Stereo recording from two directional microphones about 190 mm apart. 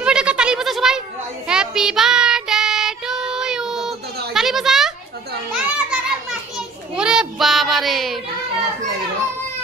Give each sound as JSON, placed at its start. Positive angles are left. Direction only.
{"t": 0.0, "sound": "goat", "side_deg": -5}
{"t": 1.5, "sound": "child singing", "side_deg": -5}
{"t": 4.3, "sound": "a sound", "side_deg": 0}
{"t": 5.5, "sound": "children playing", "side_deg": -5}
{"t": 7.0, "sound": "child singing", "side_deg": -5}